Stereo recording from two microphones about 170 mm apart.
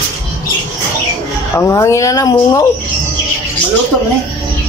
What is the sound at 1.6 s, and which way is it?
Speech, 15° left (ahead or behind).